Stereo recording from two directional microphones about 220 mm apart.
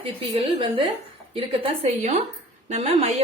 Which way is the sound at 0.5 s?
20° right (ahead or behind).